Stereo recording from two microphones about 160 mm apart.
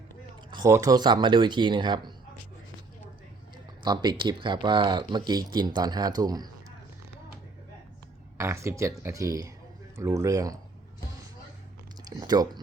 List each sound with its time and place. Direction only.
0.5 s speech: 20° right (ahead or behind)
3.8 s speech: 25° right (ahead or behind)
8.4 s speech: 20° right (ahead or behind)
12.0 s a sound: 25° right (ahead or behind)